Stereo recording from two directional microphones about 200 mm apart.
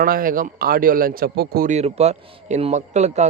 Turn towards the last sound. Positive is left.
turn(degrees=-35)  # may be behind; listen again after turning